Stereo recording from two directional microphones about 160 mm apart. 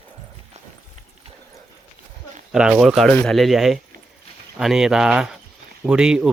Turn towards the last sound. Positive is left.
turn(degrees=-5)  # may be behind; listen again after turning